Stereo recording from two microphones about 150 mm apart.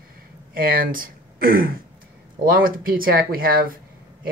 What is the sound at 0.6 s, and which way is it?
Speech, 75° right (ahead or behind).